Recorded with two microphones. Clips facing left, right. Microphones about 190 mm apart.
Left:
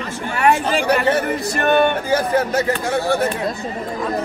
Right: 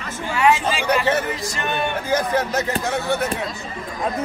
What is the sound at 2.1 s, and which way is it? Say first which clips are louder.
Speech: left 3 dB; 30° left (ahead or behind).